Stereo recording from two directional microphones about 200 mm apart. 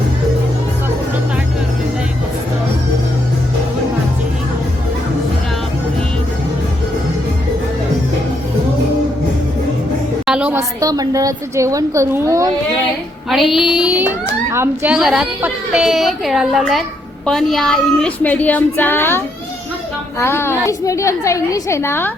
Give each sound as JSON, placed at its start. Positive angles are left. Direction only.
{"t": 10.2, "sound": "a woman's voice", "side_deg": -5}
{"t": 10.6, "sound": "a woman's voice", "side_deg": -15}
{"t": 13.3, "sound": "a woman's voice", "side_deg": 0}